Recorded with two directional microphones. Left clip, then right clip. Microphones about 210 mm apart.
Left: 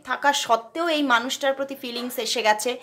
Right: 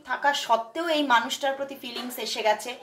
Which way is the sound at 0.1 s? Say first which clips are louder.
Left 3 dB; 40° left (ahead or behind).